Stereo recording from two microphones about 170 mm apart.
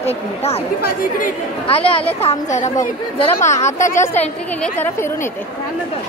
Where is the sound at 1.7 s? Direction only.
35° left (ahead or behind).